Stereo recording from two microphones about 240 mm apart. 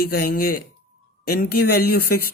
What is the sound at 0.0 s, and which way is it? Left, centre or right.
Speech, left.